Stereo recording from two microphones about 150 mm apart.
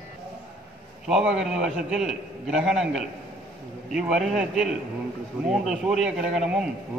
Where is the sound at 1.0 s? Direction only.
5° right (ahead or behind).